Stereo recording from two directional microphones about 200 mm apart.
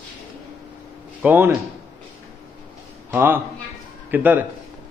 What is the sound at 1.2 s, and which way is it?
Speech, 10° right (ahead or behind).